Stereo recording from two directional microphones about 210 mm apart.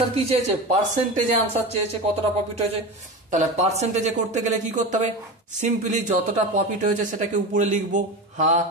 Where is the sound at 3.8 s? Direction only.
35° right (ahead or behind).